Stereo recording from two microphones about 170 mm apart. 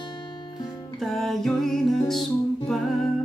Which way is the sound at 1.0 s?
Centre (ahead or behind).